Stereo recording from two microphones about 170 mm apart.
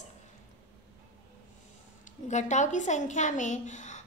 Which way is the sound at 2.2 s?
45° left (ahead or behind).